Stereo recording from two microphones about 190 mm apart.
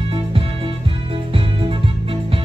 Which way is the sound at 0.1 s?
30° right (ahead or behind).